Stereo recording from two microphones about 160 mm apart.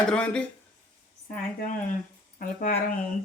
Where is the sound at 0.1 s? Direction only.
5° left (ahead or behind).